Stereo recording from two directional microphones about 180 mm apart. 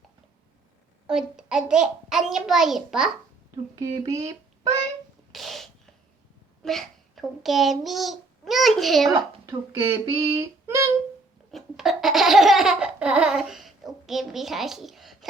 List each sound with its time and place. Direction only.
1.0 s a child's voice: 5° right (ahead or behind)
3.8 s a child's voice: 15° right (ahead or behind)
5.3 s sneeze: centre (ahead or behind)
6.6 s a child's voice: centre (ahead or behind)
9.1 s speech: 15° right (ahead or behind)
11.5 s laughter: centre (ahead or behind)